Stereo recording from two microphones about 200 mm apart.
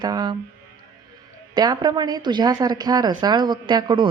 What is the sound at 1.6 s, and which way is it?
Speech, 20° right (ahead or behind).